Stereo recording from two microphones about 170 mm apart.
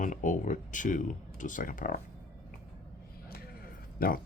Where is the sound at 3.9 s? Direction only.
60° left (ahead or behind).